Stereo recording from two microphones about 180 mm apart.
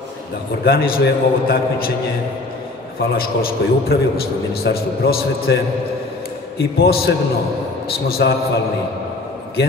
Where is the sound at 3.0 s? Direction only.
55° left (ahead or behind).